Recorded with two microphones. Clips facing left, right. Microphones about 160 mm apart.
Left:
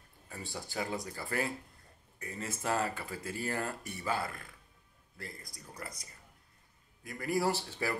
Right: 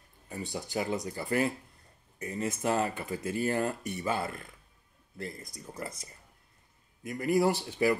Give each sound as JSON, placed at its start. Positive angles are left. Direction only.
{"t": 0.3, "sound": "speech", "side_deg": -20}